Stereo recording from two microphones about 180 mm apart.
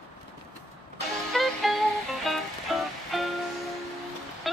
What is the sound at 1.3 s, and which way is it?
Music, centre (ahead or behind).